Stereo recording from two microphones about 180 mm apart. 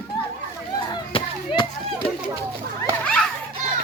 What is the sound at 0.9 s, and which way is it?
Chop, 25° left (ahead or behind).